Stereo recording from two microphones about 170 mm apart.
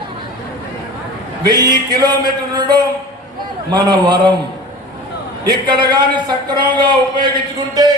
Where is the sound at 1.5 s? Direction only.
25° right (ahead or behind).